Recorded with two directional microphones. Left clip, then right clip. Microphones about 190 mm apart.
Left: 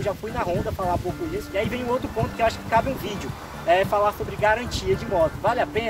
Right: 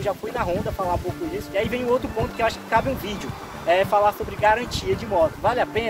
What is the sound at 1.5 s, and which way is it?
Speech, 20° right (ahead or behind).